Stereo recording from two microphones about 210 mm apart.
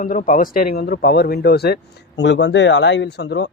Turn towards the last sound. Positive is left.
turn(degrees=50)  # may be behind; listen again after turning